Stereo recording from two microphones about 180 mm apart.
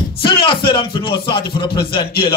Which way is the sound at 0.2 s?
25° left (ahead or behind).